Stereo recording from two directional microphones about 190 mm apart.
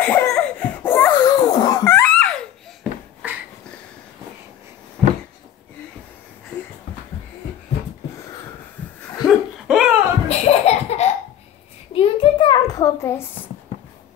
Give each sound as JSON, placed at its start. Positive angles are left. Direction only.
{"t": 0.0, "sound": "laughter", "side_deg": 10}
{"t": 1.2, "sound": "laughter", "side_deg": 20}
{"t": 2.8, "sound": "a sound", "side_deg": -5}
{"t": 9.2, "sound": "laughter", "side_deg": 0}
{"t": 10.2, "sound": "laughter", "side_deg": 35}
{"t": 11.9, "sound": "a sound", "side_deg": 30}